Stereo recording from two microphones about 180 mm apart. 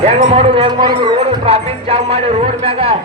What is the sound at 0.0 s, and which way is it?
Speech, 35° right (ahead or behind).